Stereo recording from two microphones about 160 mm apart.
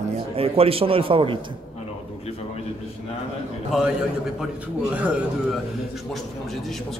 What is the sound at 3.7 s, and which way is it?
Speech, centre (ahead or behind).